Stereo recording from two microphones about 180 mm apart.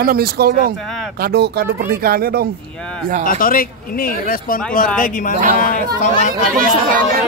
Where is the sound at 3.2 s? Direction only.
50° left (ahead or behind).